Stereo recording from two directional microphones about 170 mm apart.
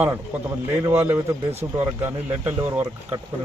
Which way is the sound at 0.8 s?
15° right (ahead or behind).